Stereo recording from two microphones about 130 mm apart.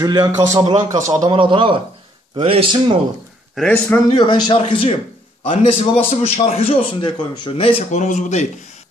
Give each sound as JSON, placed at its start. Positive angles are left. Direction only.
{"t": 0.0, "sound": "a man's voice", "side_deg": -30}
{"t": 1.3, "sound": "a man's voice", "side_deg": -40}
{"t": 3.5, "sound": "a man's voice", "side_deg": 5}
{"t": 4.2, "sound": "a man's voice", "side_deg": 35}
{"t": 7.9, "sound": "speech", "side_deg": 70}